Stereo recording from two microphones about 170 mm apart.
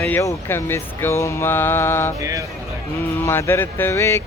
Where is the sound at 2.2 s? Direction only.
20° right (ahead or behind).